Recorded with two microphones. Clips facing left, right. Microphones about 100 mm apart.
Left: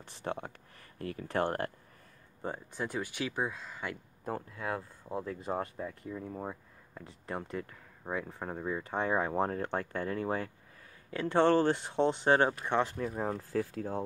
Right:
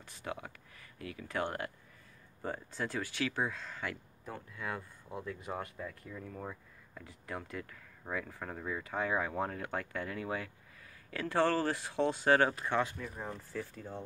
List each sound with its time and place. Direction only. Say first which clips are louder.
0.0 s speech: left 4 dB; 35° left (ahead or behind)
2.4 s speech: left 1 dB; 20° left (ahead or behind)
4.6 s speech: left 4 dB; 35° left (ahead or behind)
11.1 s speech: left 4 dB; 25° left (ahead or behind)
12.8 s speech: left 7 dB; 45° left (ahead or behind)
13.4 s speech: left 8 dB; 80° left; by 13.9 s 65° left (ahead or behind)